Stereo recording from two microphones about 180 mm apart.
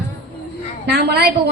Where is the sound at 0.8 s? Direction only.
65° right (ahead or behind).